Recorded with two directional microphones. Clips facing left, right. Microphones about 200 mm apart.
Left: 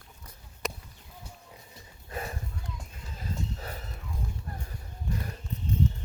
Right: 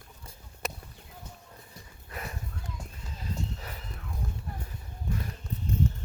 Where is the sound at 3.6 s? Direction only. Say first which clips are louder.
Left 3 dB; 35° left (ahead or behind).